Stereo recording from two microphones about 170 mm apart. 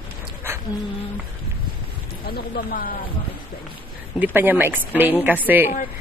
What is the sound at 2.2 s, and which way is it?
Speech, 60° left (ahead or behind).